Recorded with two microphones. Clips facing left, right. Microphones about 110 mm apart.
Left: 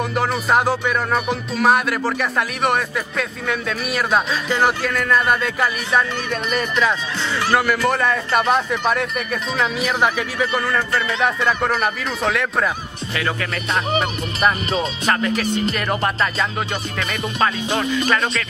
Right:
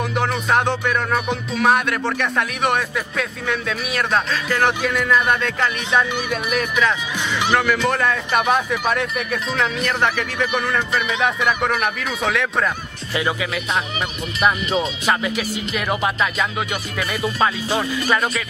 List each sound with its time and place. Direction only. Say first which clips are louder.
0.1 s music: left 1 dB; centre (ahead or behind)
5.3 s music: left 1 dB; 5° left (ahead or behind)
13.1 s music: right 2 dB; 15° right (ahead or behind)
15.0 s music: left 1 dB; 5° right (ahead or behind)
17.8 s speech: left 2 dB; 20° left (ahead or behind)